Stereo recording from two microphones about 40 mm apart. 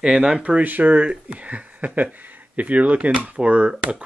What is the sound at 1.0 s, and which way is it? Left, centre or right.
Speech, right.